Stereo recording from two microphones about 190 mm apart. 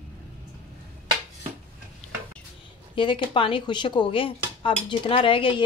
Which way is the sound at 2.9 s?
25° left (ahead or behind).